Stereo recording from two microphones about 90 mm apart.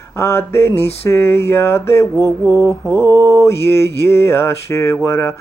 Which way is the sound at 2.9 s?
30° left (ahead or behind).